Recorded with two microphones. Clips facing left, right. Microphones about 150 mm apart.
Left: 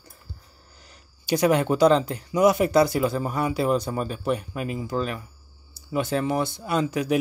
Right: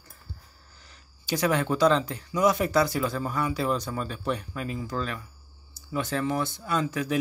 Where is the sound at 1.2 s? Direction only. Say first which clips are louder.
Left 5 dB; 15° left (ahead or behind).